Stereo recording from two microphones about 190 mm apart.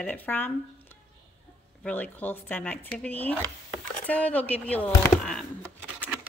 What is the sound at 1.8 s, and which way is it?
Speech, 10° left (ahead or behind).